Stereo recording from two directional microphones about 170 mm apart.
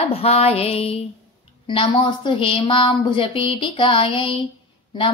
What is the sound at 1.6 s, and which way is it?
A woman's voice, 30° left (ahead or behind).